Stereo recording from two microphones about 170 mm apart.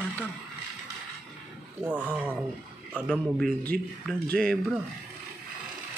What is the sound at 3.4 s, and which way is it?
A man's voice, 5° left (ahead or behind).